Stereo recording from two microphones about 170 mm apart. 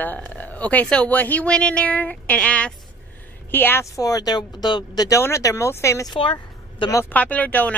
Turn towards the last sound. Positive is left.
turn(degrees=10)  # may be behind; listen again after turning